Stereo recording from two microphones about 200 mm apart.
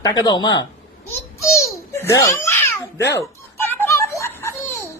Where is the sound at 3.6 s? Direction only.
10° left (ahead or behind).